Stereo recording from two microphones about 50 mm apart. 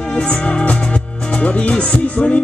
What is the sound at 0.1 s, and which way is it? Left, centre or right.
Music, left.